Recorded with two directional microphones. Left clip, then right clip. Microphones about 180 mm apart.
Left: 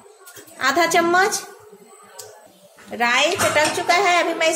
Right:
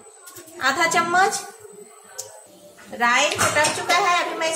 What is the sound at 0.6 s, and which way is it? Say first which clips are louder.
Speech: left 2 dB; 40° left (ahead or behind).